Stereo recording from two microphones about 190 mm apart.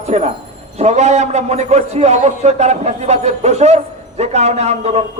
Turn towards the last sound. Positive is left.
turn(degrees=-35)  # may be behind; listen again after turning